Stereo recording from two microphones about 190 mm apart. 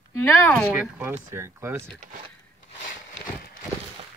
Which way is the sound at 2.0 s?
40° right (ahead or behind).